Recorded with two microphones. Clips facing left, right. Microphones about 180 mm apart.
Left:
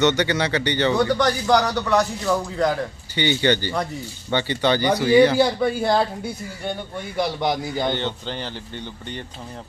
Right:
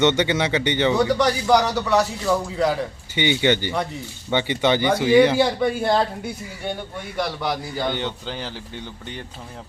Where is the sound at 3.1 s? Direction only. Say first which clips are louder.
Even; 15° right (ahead or behind).